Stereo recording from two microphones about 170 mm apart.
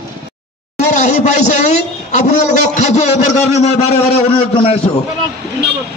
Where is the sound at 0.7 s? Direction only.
40° left (ahead or behind).